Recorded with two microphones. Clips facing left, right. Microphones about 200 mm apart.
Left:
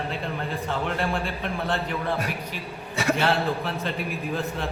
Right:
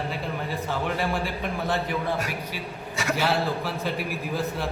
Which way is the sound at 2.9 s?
30° left (ahead or behind).